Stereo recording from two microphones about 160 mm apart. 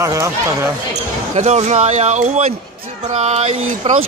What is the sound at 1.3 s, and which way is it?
Speech, 45° right (ahead or behind).